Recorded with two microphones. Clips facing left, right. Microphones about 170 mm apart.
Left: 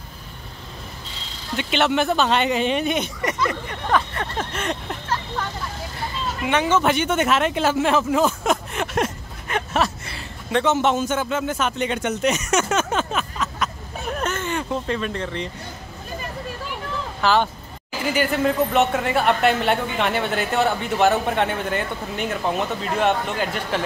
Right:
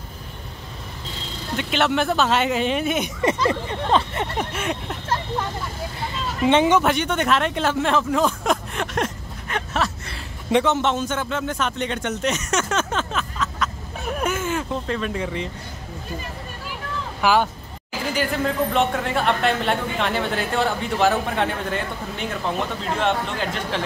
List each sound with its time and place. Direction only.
1.6 s speech: centre (ahead or behind)
3.2 s speech: 25° right (ahead or behind)
4.5 s a sound: 5° right (ahead or behind)
6.4 s speech: 25° right (ahead or behind)
6.8 s a man's voice: centre (ahead or behind)
14.1 s speech: 5° right (ahead or behind)
17.2 s speech: 10° right (ahead or behind)
18.0 s speech: 5° left (ahead or behind)